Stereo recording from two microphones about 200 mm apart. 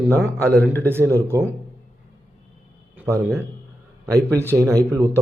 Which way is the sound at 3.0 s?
15° right (ahead or behind).